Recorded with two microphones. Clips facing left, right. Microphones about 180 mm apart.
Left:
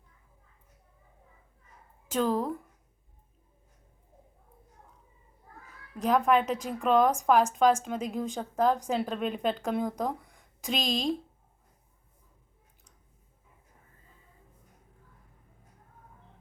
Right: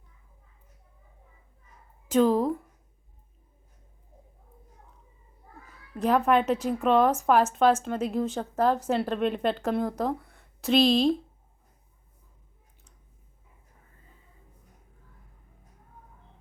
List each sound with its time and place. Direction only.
2.0 s speech: 10° right (ahead or behind)
6.0 s a woman's voice: 5° right (ahead or behind)
9.9 s a sound: 5° right (ahead or behind)
10.8 s speech: 35° right (ahead or behind)